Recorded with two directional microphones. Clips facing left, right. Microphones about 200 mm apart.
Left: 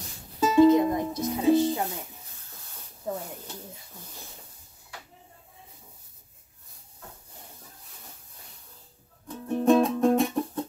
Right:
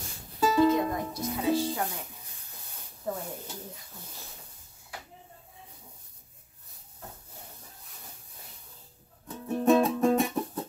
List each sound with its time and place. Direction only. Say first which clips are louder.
0.4 s music: left 5 dB; 20° left (ahead or behind)
3.1 s speech: left 1 dB; 15° left (ahead or behind)
9.3 s music: left 2 dB; centre (ahead or behind)